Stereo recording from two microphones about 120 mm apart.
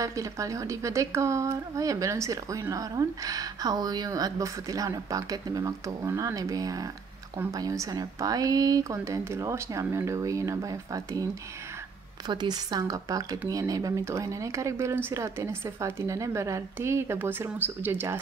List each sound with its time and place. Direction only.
0.0 s a woman's voice: 25° right (ahead or behind)
12.3 s a woman's voice: 35° right (ahead or behind); by 18.2 s 20° right (ahead or behind)